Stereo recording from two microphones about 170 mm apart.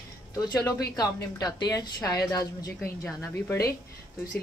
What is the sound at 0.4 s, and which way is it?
A woman's voice, 20° left (ahead or behind).